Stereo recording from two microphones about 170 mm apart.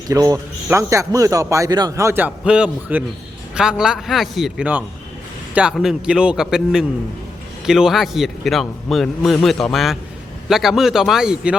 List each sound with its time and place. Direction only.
0.1 s a man's voice: 20° right (ahead or behind)